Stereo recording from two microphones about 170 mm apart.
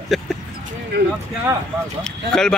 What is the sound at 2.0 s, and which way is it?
Speech, 5° left (ahead or behind).